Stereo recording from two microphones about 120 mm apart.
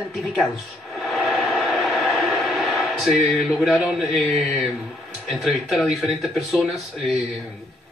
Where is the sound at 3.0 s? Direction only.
5° right (ahead or behind).